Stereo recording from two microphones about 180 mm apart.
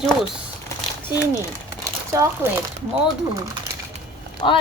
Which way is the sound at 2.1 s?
20° right (ahead or behind).